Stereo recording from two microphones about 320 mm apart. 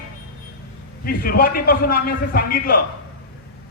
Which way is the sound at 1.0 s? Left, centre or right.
Left.